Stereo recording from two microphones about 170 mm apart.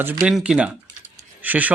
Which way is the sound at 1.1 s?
10° right (ahead or behind).